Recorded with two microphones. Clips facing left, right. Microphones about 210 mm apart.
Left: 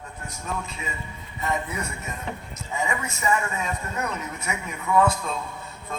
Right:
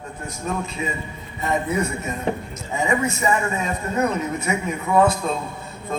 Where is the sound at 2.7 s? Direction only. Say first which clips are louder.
Right 7 dB; 30° right (ahead or behind).